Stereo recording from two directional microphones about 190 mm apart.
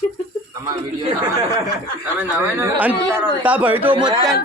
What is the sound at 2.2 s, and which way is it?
Speech, 10° right (ahead or behind).